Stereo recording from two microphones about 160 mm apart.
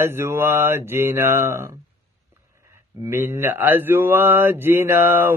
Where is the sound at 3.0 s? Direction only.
15° right (ahead or behind).